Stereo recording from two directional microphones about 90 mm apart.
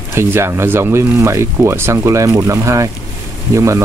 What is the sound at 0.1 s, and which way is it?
Speech, 30° right (ahead or behind).